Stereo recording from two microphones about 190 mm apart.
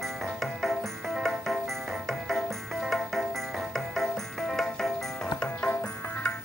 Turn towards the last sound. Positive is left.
turn(degrees=10)  # may be behind; listen again after turning